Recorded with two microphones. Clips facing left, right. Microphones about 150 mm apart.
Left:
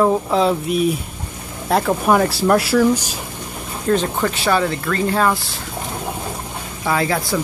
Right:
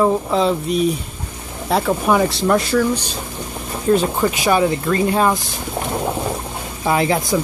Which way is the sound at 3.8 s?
10° right (ahead or behind).